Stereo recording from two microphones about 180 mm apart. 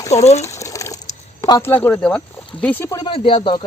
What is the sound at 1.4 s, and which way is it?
Speech, 15° left (ahead or behind).